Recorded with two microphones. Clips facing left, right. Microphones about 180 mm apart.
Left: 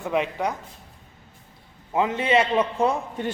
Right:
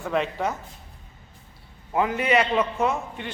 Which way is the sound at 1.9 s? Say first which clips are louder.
Left 1 dB; 20° left (ahead or behind).